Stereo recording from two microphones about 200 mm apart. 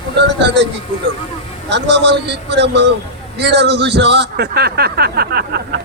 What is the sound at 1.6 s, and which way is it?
Speech, 60° right (ahead or behind).